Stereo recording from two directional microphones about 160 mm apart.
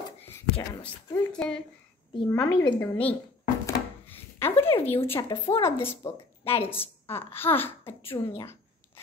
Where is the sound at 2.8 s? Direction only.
10° left (ahead or behind).